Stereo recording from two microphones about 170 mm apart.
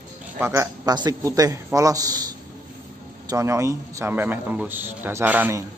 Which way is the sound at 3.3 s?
20° right (ahead or behind).